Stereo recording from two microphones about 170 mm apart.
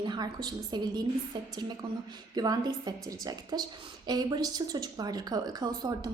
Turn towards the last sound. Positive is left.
turn(degrees=-25)  # may be behind; listen again after turning